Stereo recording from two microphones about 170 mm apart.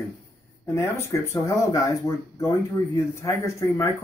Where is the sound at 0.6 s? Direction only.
15° left (ahead or behind).